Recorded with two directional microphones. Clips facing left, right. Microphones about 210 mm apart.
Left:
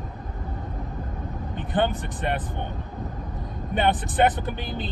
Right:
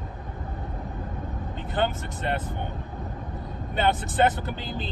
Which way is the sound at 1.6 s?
15° left (ahead or behind).